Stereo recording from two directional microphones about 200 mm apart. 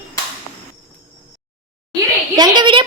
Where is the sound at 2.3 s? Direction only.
20° right (ahead or behind).